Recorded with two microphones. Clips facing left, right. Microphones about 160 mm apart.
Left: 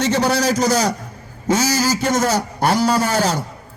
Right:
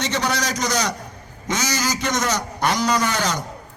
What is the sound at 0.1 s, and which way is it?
Speech, 30° left (ahead or behind).